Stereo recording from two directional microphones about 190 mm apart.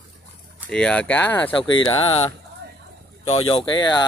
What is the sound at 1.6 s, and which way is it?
Speech, 25° left (ahead or behind).